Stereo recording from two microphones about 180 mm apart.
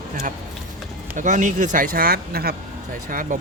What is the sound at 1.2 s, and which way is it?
Speech, 45° right (ahead or behind).